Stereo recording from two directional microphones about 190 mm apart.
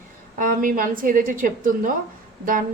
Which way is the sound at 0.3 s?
45° right (ahead or behind).